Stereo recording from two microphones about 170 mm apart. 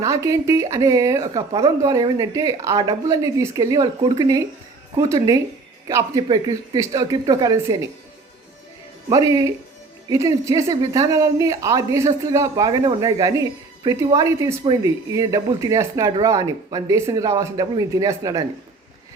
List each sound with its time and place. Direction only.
0.0 s speech: 20° right (ahead or behind)
9.0 s speech: 20° right (ahead or behind)